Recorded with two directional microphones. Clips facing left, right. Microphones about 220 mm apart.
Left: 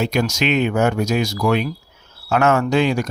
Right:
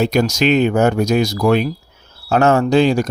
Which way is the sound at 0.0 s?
40° right (ahead or behind).